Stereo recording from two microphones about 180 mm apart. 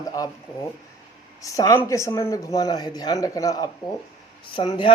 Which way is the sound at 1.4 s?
20° left (ahead or behind).